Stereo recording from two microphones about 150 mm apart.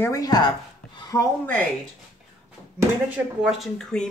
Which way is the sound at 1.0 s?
25° left (ahead or behind).